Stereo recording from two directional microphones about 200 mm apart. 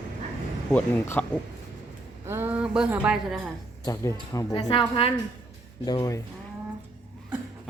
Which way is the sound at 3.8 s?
15° left (ahead or behind).